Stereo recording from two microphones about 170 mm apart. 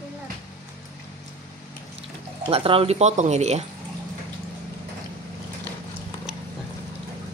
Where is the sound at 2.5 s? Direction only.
35° right (ahead or behind).